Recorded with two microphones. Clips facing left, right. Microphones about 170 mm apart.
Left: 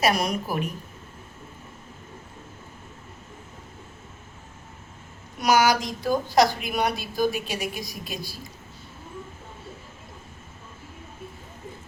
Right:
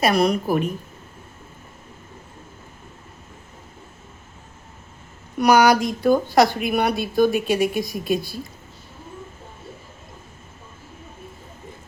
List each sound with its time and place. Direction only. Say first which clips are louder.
0.0 s a woman's voice: right 5 dB; 60° right (ahead or behind)
5.4 s a woman's voice: right 5 dB; 60° right (ahead or behind)